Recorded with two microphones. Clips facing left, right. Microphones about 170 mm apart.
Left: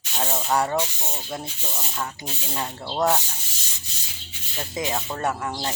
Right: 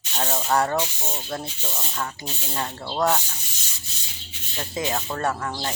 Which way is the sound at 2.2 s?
5° left (ahead or behind).